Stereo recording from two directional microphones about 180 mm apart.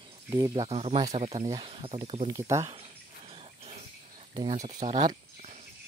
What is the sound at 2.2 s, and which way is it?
Speech, 20° right (ahead or behind).